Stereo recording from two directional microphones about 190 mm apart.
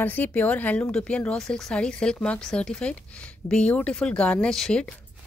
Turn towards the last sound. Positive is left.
turn(degrees=5)  # may be behind; listen again after turning